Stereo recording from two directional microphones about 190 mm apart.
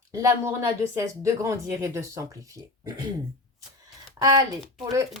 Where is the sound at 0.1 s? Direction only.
15° right (ahead or behind).